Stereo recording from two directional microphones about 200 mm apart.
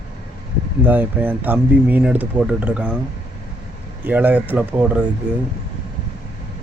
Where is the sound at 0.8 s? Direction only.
10° right (ahead or behind).